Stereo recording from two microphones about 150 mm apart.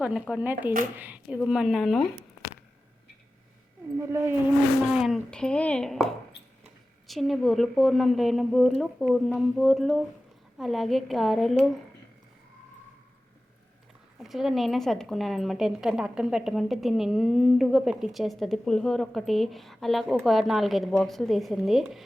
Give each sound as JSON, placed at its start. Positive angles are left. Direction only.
{"t": 0.0, "sound": "a woman's voice", "side_deg": -5}
{"t": 3.9, "sound": "speech", "side_deg": -20}
{"t": 4.9, "sound": "a woman's voice", "side_deg": 0}
{"t": 7.1, "sound": "a woman's voice", "side_deg": 0}
{"t": 14.2, "sound": "a woman's voice", "side_deg": 0}